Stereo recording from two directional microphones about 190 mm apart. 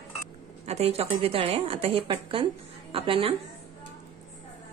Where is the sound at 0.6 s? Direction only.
35° right (ahead or behind).